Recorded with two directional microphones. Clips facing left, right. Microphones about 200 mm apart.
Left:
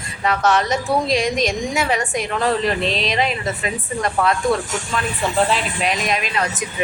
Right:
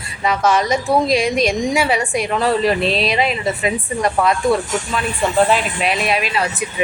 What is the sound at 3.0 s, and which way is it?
A woman's voice, 10° right (ahead or behind).